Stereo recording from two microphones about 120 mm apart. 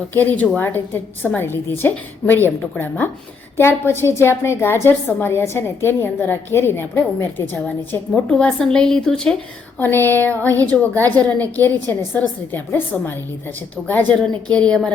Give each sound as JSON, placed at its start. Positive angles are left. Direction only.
{"t": 0.1, "sound": "a woman's voice", "side_deg": 15}